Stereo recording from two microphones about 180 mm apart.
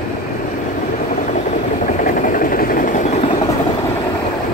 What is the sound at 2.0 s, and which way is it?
Vehicle, 50° left (ahead or behind).